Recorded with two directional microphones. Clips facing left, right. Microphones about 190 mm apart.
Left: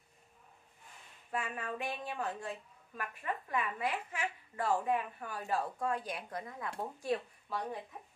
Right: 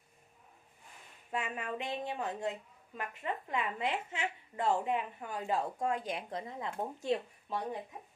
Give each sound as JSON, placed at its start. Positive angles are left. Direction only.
{"t": 1.3, "sound": "a woman's voice", "side_deg": -20}